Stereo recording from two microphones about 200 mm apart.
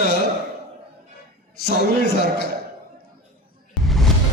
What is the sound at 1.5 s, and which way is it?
Speech, 50° left (ahead or behind).